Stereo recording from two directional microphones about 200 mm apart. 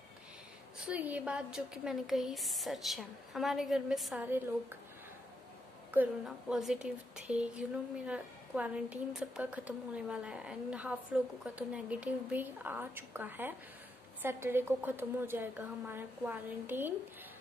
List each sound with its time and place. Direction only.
0.7 s a woman's voice: 5° right (ahead or behind)
5.9 s a woman's voice: centre (ahead or behind)